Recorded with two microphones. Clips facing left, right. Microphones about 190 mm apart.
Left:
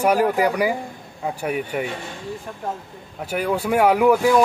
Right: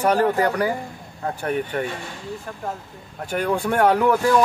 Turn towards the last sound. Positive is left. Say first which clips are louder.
# left 2 dB
turn(degrees=10)  # may be behind; listen again after turning